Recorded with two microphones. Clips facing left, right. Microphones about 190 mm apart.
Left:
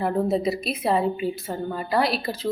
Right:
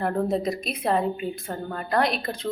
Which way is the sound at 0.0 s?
5° left (ahead or behind).